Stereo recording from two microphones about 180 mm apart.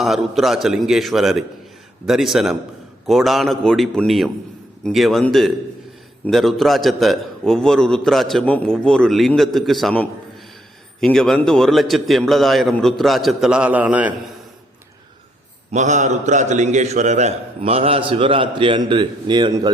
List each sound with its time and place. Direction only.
0.0 s a man's voice: centre (ahead or behind)
15.7 s a man's voice: 40° right (ahead or behind); by 19.7 s 25° right (ahead or behind)